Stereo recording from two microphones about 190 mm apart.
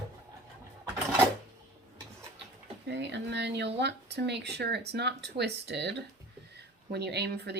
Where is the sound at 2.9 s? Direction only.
65° right (ahead or behind).